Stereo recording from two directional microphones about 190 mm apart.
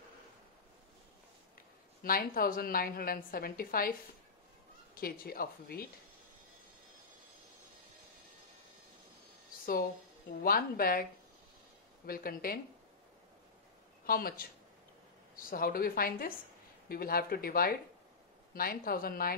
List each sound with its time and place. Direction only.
2.0 s a woman's voice: 50° left (ahead or behind)
4.9 s a woman's voice: 50° left (ahead or behind)
10.4 s a woman's voice: 50° left (ahead or behind)
12.1 s a woman's voice: 50° left (ahead or behind)
14.0 s a woman's voice: 50° left (ahead or behind)